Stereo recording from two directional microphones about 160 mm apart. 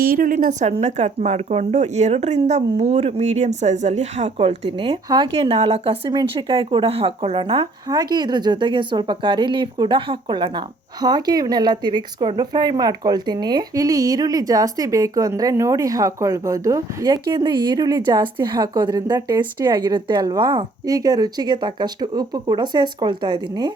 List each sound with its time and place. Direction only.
0.0 s a woman's voice: 60° right (ahead or behind)
0.7 s speech: 45° right (ahead or behind); by 23.7 s 25° right (ahead or behind)